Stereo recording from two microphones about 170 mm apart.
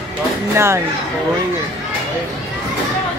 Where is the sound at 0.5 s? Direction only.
15° right (ahead or behind).